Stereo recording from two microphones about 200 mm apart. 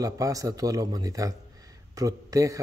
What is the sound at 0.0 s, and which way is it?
Speech, 15° right (ahead or behind).